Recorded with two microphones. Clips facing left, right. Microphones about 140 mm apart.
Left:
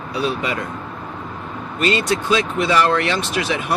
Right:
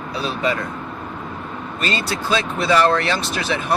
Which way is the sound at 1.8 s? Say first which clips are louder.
Left 5 dB; 35° right (ahead or behind).